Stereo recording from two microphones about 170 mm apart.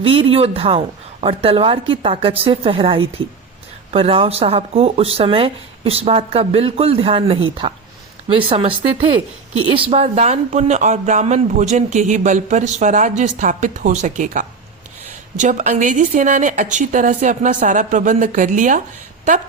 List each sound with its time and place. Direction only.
0.0 s speech: 30° right (ahead or behind); by 18.8 s 50° right (ahead or behind)